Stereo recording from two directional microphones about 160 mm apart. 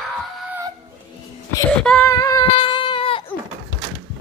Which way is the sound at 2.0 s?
20° left (ahead or behind).